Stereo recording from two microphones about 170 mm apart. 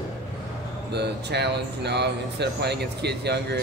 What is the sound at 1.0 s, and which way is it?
Speech, 80° right.